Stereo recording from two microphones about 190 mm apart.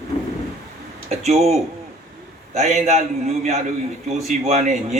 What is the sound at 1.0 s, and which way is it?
Speech, 35° right (ahead or behind).